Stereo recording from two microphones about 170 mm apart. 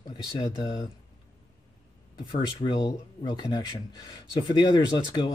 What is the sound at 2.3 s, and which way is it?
Speech, 25° left (ahead or behind).